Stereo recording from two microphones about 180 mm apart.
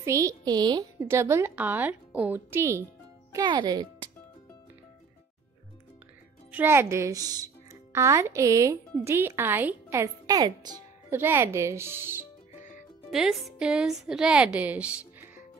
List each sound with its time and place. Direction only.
0.0 s speech: 15° right (ahead or behind)
6.5 s speech: 10° right (ahead or behind)
13.1 s a woman's voice: centre (ahead or behind)